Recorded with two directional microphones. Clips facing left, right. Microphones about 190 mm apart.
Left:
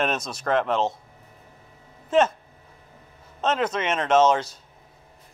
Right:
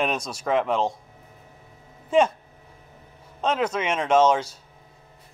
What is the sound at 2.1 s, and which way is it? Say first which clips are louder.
Speech: even; 10° right (ahead or behind).